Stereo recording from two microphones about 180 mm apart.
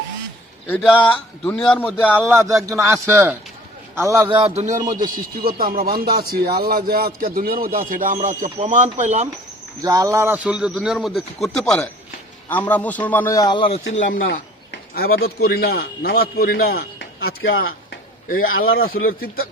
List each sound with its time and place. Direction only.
0.7 s a man's voice: 5° left (ahead or behind)
2.4 s speech: 15° right (ahead or behind)
4.3 s a man's voice: 30° right (ahead or behind)
9.8 s a man's voice: 20° right (ahead or behind); by 13.7 s 25° left (ahead or behind)
13.9 s a man's voice: 50° left (ahead or behind); by 18.9 s 90° left
18.9 s a man's voice: 55° left (ahead or behind)